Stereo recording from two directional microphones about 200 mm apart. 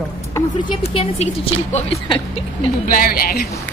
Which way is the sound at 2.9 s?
45° left (ahead or behind).